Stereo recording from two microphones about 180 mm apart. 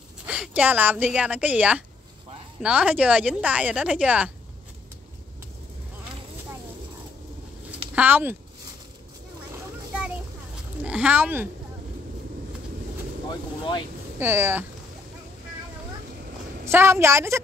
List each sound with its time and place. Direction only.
0.3 s speech: 10° right (ahead or behind)
7.9 s speech: 10° right (ahead or behind)
10.8 s speech: 5° right (ahead or behind)
13.3 s speech: 25° left (ahead or behind)
14.2 s speech: 10° right (ahead or behind)
16.6 s speech: 15° right (ahead or behind)